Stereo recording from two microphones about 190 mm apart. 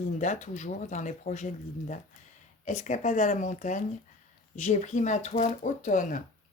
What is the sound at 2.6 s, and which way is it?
Speech, 40° left (ahead or behind).